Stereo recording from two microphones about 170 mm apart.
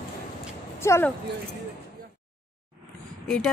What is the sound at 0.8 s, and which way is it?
Speech, 15° left (ahead or behind).